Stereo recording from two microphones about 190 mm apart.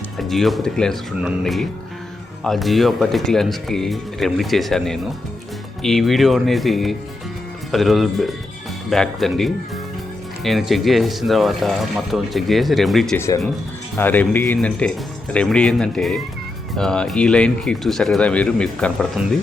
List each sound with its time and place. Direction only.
0.2 s speech: centre (ahead or behind)
13.1 s speech: 15° left (ahead or behind); by 19.3 s centre (ahead or behind)